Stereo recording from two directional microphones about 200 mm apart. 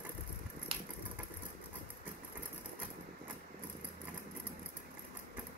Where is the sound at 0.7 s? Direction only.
30° right (ahead or behind).